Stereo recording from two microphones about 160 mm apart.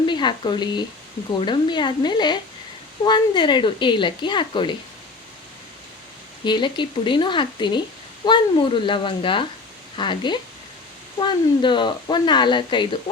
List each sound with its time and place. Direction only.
0.0 s speech: 30° left (ahead or behind)
6.4 s speech: 30° left (ahead or behind)